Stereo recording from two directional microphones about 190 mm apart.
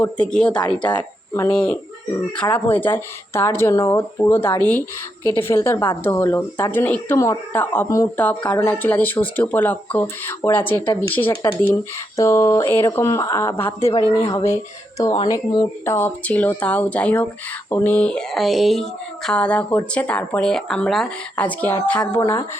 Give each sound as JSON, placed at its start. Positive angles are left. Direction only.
{"t": 0.0, "sound": "a woman's voice", "side_deg": 5}
{"t": 15.8, "sound": "a woman's voice", "side_deg": 10}